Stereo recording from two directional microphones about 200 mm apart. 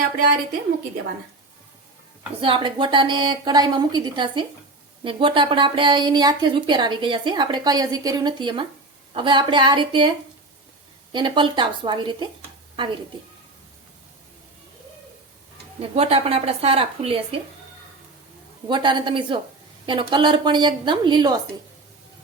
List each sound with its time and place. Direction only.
2.4 s speech: 25° right (ahead or behind)
15.8 s speech: 30° right (ahead or behind)
18.7 s speech: 25° right (ahead or behind)